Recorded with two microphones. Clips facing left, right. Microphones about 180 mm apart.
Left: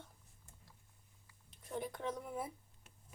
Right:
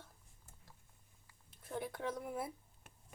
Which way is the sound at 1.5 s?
Centre (ahead or behind).